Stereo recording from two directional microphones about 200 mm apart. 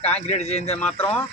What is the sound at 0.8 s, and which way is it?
Speech, 10° left (ahead or behind).